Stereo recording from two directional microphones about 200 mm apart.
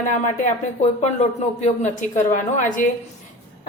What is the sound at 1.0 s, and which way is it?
A woman's voice, 35° left (ahead or behind).